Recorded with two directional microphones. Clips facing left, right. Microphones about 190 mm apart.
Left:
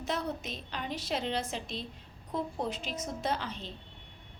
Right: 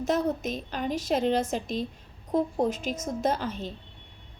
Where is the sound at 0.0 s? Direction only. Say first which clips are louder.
Right 8 dB; 45° right (ahead or behind).